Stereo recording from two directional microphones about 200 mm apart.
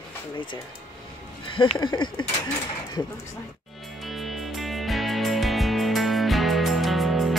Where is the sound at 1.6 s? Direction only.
25° left (ahead or behind).